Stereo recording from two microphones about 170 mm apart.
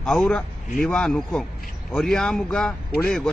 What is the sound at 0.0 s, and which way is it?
A man's voice, 5° left (ahead or behind).